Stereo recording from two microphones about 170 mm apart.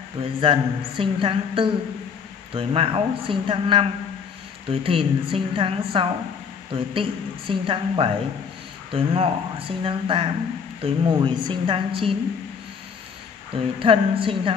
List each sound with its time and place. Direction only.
0.2 s a woman's voice: 30° right (ahead or behind)
13.7 s a woman's voice: 30° right (ahead or behind)